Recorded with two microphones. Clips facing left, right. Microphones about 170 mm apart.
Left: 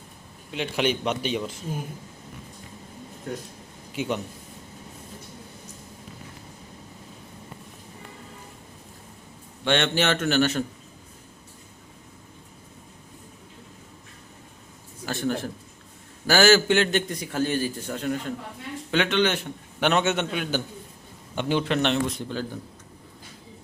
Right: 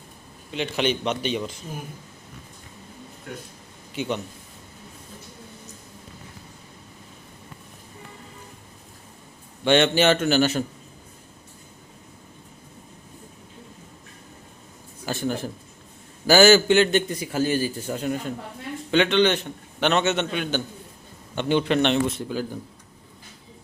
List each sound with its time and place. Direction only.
0.5 s a man's voice: 5° left (ahead or behind)
3.9 s a man's voice: 5° left (ahead or behind)
9.6 s a man's voice: 5° right (ahead or behind)
15.0 s a man's voice: 5° right (ahead or behind)
18.9 s a man's voice: 5° left (ahead or behind)